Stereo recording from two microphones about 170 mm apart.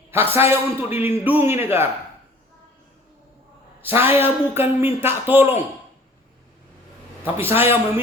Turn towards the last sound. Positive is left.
turn(degrees=-10)  # may be behind; listen again after turning